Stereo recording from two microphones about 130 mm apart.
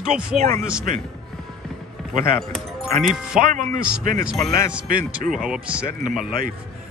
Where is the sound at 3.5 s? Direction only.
90° right.